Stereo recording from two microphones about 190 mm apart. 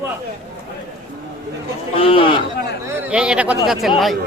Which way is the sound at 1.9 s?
30° left (ahead or behind).